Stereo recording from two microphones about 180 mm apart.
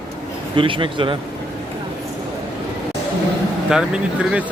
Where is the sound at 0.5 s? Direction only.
30° right (ahead or behind).